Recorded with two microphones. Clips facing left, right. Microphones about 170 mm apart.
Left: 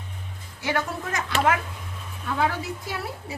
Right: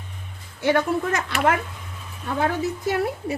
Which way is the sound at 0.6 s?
55° right (ahead or behind).